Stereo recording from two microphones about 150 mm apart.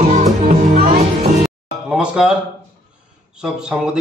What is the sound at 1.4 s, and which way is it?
Music, 5° right (ahead or behind).